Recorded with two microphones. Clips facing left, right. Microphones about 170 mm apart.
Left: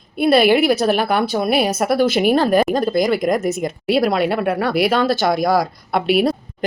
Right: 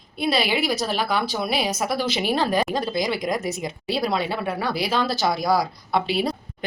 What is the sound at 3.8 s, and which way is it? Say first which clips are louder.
Speech: left 8 dB; 60° left (ahead or behind).